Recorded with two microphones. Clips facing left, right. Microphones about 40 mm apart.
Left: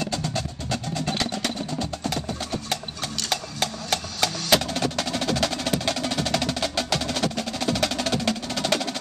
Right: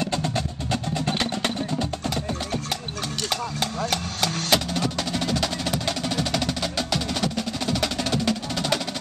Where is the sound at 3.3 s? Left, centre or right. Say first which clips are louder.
Even; centre.